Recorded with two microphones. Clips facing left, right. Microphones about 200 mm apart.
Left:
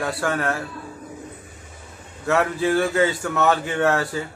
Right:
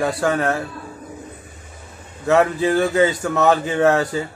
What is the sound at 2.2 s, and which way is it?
Speech, 15° right (ahead or behind).